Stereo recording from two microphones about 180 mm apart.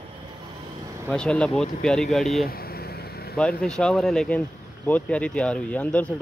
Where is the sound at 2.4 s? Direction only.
55° left (ahead or behind).